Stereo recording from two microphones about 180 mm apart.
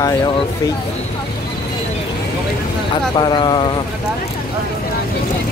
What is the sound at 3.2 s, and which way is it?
Speech, 25° left (ahead or behind).